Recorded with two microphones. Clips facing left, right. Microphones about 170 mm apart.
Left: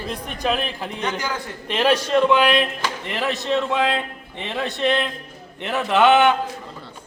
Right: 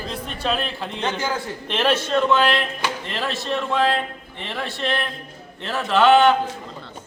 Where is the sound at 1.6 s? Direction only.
10° left (ahead or behind).